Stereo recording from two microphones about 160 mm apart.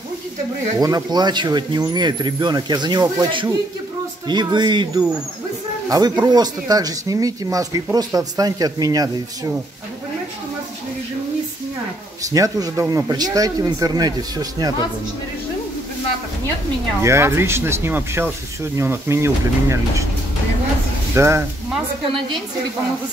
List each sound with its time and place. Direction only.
0.7 s speech: 25° right (ahead or behind)
12.2 s speech: 20° right (ahead or behind)
17.0 s speech: 15° right (ahead or behind)
21.1 s speech: 15° right (ahead or behind)